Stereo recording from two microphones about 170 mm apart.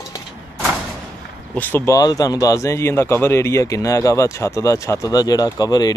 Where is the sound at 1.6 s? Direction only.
10° left (ahead or behind).